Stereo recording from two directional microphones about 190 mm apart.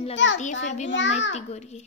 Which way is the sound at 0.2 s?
75° left (ahead or behind).